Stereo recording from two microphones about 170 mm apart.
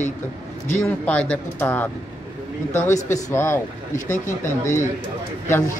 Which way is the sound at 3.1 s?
15° left (ahead or behind).